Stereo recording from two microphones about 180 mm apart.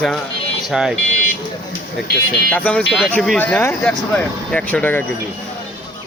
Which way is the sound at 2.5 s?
10° left (ahead or behind).